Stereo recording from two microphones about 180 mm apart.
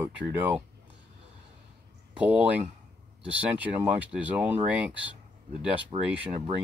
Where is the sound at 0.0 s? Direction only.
10° right (ahead or behind).